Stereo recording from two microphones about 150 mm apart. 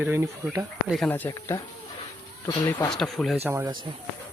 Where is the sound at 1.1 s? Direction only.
15° left (ahead or behind).